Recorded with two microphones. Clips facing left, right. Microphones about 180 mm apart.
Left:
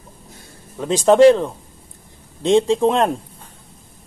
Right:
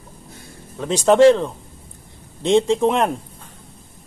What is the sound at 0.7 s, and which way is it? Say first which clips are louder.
Speech: left 1 dB; 15° left (ahead or behind).